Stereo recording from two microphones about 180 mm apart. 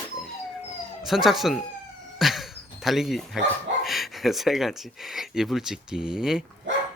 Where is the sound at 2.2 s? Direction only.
Centre (ahead or behind).